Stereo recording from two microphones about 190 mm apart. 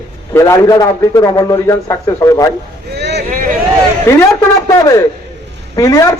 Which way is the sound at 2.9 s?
60° right (ahead or behind).